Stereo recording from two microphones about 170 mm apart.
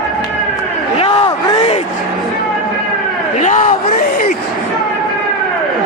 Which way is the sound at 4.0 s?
60° left (ahead or behind).